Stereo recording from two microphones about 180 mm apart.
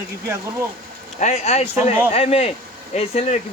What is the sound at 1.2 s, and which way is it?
Speech, 35° left (ahead or behind).